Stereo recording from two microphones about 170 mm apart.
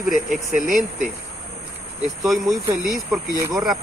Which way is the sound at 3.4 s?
20° right (ahead or behind).